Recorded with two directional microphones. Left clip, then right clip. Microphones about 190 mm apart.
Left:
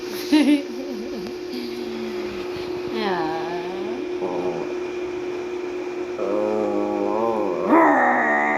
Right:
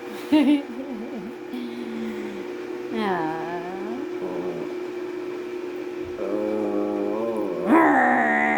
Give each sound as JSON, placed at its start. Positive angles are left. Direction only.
{"t": 0.3, "sound": "hoot", "side_deg": -10}
{"t": 3.0, "sound": "a sound", "side_deg": -25}
{"t": 7.7, "sound": "dog", "side_deg": -35}